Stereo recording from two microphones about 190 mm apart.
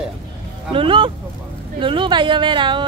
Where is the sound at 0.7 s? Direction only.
25° right (ahead or behind).